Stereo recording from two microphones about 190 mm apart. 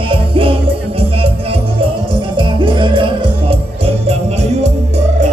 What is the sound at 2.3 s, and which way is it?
Music, 25° right (ahead or behind).